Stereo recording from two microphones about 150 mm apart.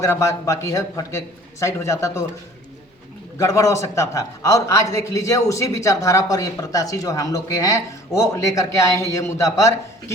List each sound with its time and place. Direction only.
0.0 s a man's voice: 20° left (ahead or behind)
3.3 s a man's voice: 20° left (ahead or behind)